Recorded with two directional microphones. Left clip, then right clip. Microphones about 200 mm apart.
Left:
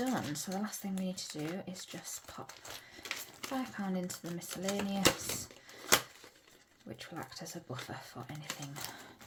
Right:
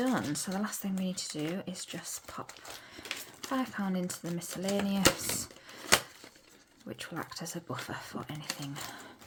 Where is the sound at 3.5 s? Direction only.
25° right (ahead or behind).